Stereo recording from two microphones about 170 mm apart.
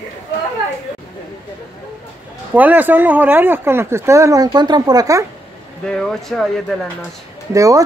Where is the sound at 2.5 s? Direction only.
10° right (ahead or behind).